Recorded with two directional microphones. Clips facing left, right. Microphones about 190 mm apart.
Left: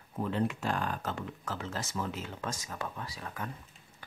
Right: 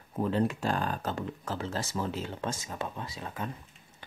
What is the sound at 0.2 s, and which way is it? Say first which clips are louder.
Speech: right 3 dB; 35° right (ahead or behind).